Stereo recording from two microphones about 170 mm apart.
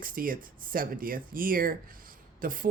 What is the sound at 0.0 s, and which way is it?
Speech, 55° right (ahead or behind).